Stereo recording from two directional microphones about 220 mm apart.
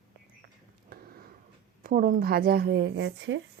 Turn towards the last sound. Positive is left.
turn(degrees=-55)  # may be behind; listen again after turning